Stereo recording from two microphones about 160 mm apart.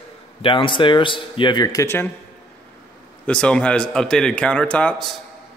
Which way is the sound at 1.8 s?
15° left (ahead or behind).